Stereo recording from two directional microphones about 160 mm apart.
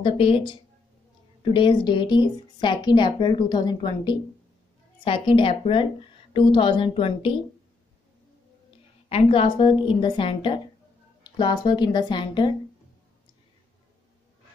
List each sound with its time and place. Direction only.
0.0 s a woman's voice: 35° left (ahead or behind)
9.1 s a woman's voice: 35° left (ahead or behind)